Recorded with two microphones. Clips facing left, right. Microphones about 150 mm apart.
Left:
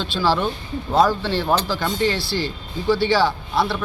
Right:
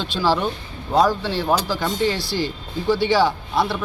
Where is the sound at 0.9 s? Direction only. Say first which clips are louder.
Even; 10° right (ahead or behind).